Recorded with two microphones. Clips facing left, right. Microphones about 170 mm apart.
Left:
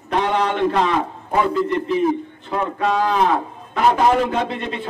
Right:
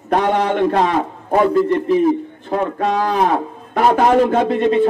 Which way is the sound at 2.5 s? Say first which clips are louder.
Right 2 dB; 45° right (ahead or behind).